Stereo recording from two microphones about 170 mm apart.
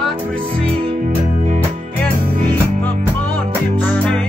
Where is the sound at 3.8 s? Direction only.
10° left (ahead or behind).